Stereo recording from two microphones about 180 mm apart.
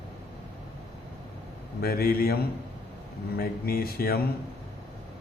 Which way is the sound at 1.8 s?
60° left (ahead or behind).